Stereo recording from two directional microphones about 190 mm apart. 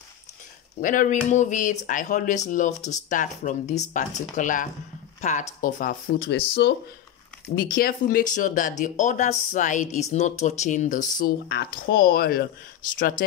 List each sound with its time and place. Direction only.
0.7 s speech: 45° left (ahead or behind)